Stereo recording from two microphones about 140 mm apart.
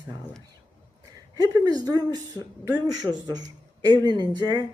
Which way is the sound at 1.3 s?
30° right (ahead or behind).